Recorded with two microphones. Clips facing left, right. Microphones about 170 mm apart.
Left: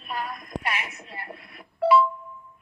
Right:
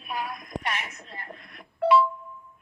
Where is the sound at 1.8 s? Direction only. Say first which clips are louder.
Left 1 dB; centre (ahead or behind).